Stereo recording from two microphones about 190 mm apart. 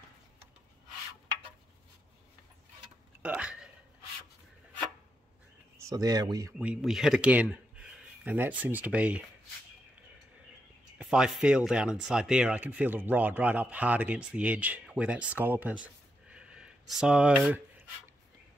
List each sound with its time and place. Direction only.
3.2 s a sound: 5° right (ahead or behind)
5.8 s speech: 20° right (ahead or behind)
6.6 s speech: 5° right (ahead or behind)
11.0 s speech: 5° right (ahead or behind)